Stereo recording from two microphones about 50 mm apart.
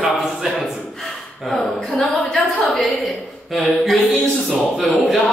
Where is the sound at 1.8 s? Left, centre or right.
Centre.